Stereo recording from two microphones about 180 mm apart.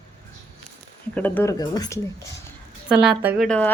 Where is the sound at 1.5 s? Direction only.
20° left (ahead or behind).